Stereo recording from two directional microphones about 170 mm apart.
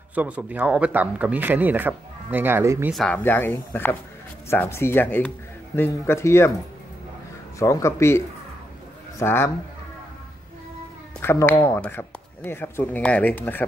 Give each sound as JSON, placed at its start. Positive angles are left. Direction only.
{"t": 0.1, "sound": "speech", "side_deg": -10}
{"t": 2.9, "sound": "speech", "side_deg": 5}
{"t": 7.5, "sound": "speech", "side_deg": 15}
{"t": 9.2, "sound": "speech", "side_deg": 15}
{"t": 11.1, "sound": "speech", "side_deg": 15}